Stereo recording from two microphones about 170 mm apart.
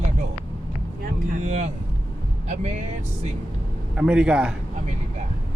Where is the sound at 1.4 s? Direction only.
45° right (ahead or behind).